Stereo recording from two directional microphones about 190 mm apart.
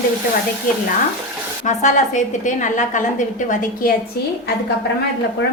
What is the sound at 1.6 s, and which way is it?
A woman's voice, 40° left (ahead or behind).